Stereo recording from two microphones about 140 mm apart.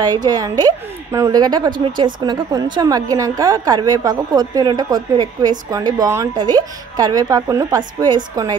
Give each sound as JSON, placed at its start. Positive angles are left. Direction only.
{"t": 0.0, "sound": "a woman's voice", "side_deg": -30}